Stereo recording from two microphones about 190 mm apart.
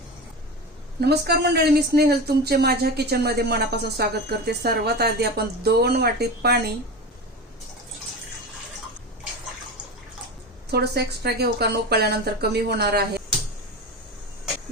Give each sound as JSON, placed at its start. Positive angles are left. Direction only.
{"t": 1.0, "sound": "speech", "side_deg": -60}
{"t": 10.7, "sound": "speech", "side_deg": -55}